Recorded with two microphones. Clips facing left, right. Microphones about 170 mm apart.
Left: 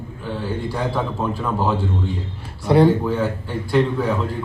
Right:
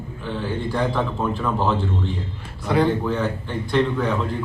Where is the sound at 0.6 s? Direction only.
10° left (ahead or behind).